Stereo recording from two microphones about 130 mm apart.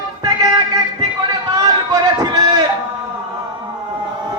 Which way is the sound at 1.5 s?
30° right (ahead or behind).